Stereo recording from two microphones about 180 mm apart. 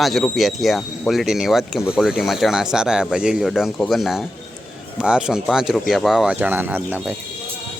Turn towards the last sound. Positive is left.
turn(degrees=-10)  # may be behind; listen again after turning